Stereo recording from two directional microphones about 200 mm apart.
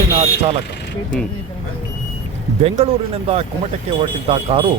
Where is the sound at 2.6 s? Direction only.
30° right (ahead or behind).